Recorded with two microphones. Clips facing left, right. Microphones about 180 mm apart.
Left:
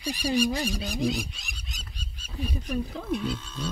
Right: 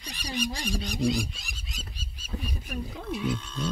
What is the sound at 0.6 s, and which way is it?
Goose, 5° left (ahead or behind).